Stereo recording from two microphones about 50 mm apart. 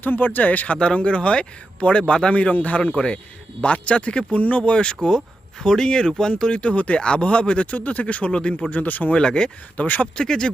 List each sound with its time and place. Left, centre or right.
0.0 s speech: left
0.8 s speech: left
8.7 s speech: left
9.1 s speech: centre
9.7 s speech: left
10.2 s speech: centre